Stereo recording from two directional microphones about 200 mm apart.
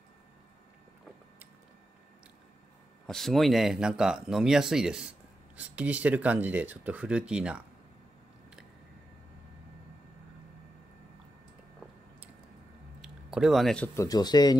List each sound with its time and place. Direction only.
3.1 s speech: centre (ahead or behind)
13.0 s a sound: 5° right (ahead or behind)
13.9 s speech: 20° left (ahead or behind)